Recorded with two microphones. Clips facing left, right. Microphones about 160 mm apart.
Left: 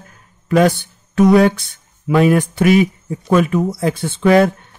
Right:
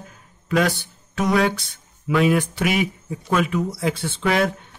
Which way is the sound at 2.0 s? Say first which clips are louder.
Left 5 dB; 45° left (ahead or behind).